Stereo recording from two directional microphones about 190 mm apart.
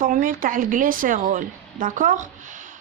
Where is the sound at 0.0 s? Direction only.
45° right (ahead or behind).